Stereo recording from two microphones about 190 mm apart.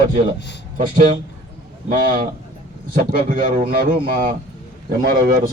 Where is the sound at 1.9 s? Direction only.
45° right (ahead or behind).